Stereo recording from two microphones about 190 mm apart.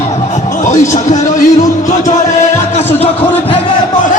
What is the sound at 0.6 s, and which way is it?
Speech, 40° left (ahead or behind).